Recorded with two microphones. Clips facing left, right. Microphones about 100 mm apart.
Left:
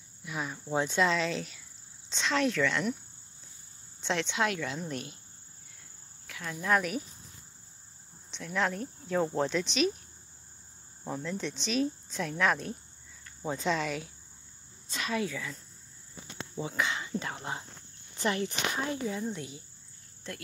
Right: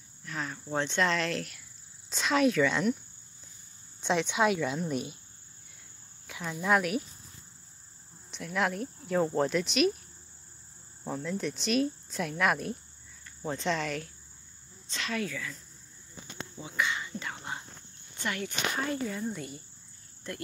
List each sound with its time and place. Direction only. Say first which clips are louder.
0.2 s speech: even; 10° left (ahead or behind); by 3.0 s 10° right (ahead or behind)
4.0 s speech: right 3 dB; 15° right (ahead or behind)
6.2 s speech: right 2 dB; 15° right (ahead or behind)
8.3 s speech: right 1 dB; 5° right (ahead or behind)
11.1 s speech: right 2 dB; centre (ahead or behind)
13.4 s speech: left 1 dB; 5° left (ahead or behind); by 15.5 s 20° left (ahead or behind)
16.6 s speech: right 1 dB; 30° left (ahead or behind)
18.9 s speech: even; 10° left (ahead or behind)